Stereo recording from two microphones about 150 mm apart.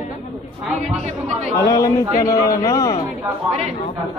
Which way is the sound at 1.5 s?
25° left (ahead or behind).